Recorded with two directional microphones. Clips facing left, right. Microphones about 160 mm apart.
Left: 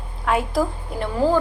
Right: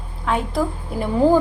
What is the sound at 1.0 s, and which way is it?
Speech, 15° right (ahead or behind).